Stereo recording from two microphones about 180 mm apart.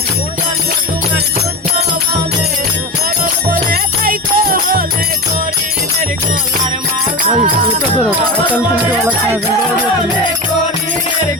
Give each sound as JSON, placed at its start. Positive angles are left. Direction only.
{"t": 3.5, "sound": "music", "side_deg": -50}